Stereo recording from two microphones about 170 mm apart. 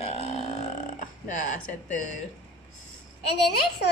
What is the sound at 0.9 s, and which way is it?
Speech, 45° left (ahead or behind).